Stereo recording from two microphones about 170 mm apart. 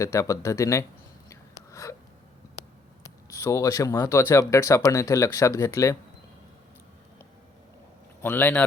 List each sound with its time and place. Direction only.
0.0 s speech: 20° left (ahead or behind)
1.3 s a sound: 20° left (ahead or behind)
3.0 s speech: 15° left (ahead or behind)
8.2 s speech: 10° left (ahead or behind)